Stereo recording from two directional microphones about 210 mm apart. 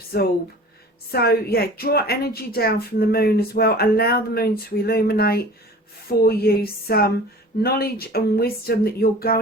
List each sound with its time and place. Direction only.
0.1 s speech: 45° left (ahead or behind)